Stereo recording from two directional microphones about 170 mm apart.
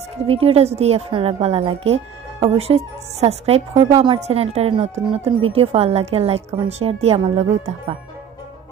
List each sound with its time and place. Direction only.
0.3 s speech: 35° right (ahead or behind)